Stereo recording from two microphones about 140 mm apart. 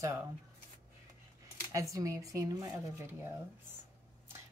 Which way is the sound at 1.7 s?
25° right (ahead or behind).